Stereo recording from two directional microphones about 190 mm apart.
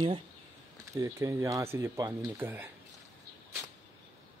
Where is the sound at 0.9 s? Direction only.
15° right (ahead or behind).